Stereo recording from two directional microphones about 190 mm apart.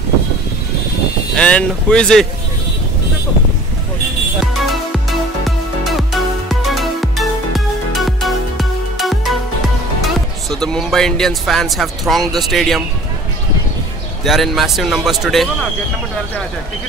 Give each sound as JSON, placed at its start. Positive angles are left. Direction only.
{"t": 1.3, "sound": "speech", "side_deg": 5}
{"t": 4.4, "sound": "music", "side_deg": 0}
{"t": 10.0, "sound": "speech", "side_deg": 0}
{"t": 14.2, "sound": "speech", "side_deg": 0}